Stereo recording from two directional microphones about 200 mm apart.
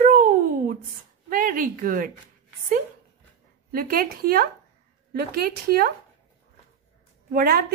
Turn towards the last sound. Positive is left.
turn(degrees=-50)  # may be behind; listen again after turning